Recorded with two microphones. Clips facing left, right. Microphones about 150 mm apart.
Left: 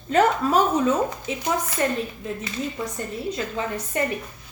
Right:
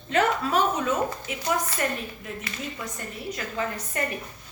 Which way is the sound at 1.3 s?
30° left (ahead or behind).